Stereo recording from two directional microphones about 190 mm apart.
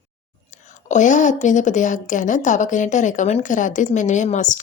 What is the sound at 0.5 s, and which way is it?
A woman's voice, 40° left (ahead or behind).